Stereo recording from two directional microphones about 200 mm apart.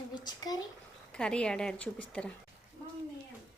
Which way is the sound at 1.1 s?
5° left (ahead or behind).